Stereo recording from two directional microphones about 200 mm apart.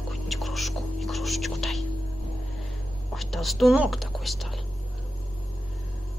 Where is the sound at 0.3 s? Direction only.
Centre (ahead or behind).